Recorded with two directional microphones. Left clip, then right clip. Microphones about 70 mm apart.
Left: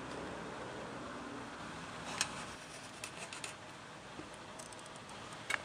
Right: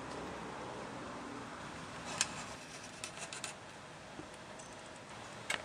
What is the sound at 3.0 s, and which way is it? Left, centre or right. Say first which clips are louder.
Rub: right 1 dB; centre.